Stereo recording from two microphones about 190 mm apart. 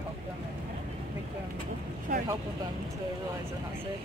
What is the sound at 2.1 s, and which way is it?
Speech, 45° right (ahead or behind).